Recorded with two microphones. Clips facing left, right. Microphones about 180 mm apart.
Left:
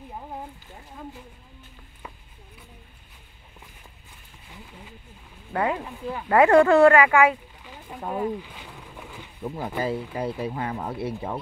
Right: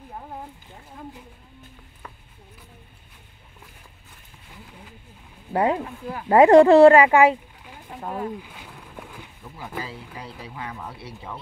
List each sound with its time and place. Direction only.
5.5 s speech: 30° right (ahead or behind)
7.6 s a sound: centre (ahead or behind)
9.4 s speech: 50° left (ahead or behind)